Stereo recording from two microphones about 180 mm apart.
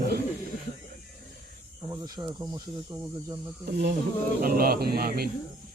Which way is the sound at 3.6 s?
65° right (ahead or behind).